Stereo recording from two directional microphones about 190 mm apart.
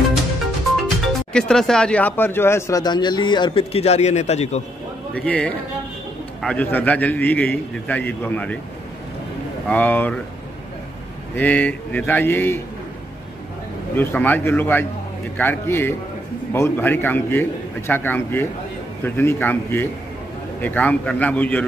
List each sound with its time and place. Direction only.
0.8 s speech: centre (ahead or behind); by 4.6 s 35° left (ahead or behind)
5.1 s a man's voice: 5° left (ahead or behind)
9.7 s a man's voice: 10° left (ahead or behind)
11.3 s a man's voice: 10° left (ahead or behind)
13.9 s a man's voice: 10° left (ahead or behind)